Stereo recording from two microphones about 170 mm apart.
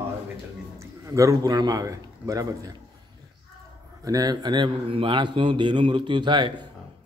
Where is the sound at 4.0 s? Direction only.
20° right (ahead or behind).